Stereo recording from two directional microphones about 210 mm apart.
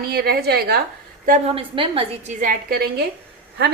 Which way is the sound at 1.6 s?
25° right (ahead or behind).